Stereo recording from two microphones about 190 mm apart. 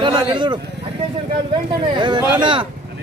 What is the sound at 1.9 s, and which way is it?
Speech, 25° right (ahead or behind).